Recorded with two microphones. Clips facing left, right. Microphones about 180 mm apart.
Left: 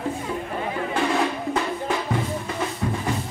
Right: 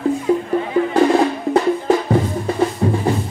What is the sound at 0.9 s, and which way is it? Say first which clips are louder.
Percussion: right 8 dB; 40° right (ahead or behind).